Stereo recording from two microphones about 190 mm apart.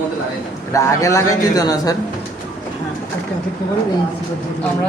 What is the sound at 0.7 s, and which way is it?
A man's voice, 15° left (ahead or behind).